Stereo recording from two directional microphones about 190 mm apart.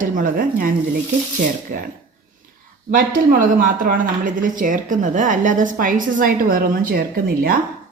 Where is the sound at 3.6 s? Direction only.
45° right (ahead or behind).